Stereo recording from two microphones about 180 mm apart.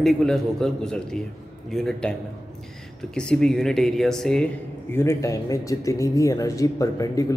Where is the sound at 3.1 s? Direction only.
5° left (ahead or behind).